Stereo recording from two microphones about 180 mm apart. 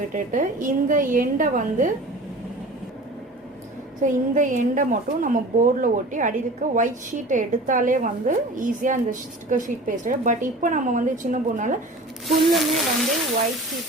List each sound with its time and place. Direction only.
0.1 s a woman's voice: 45° right (ahead or behind)
4.0 s a woman's voice: 45° right (ahead or behind)
12.4 s speech: centre (ahead or behind)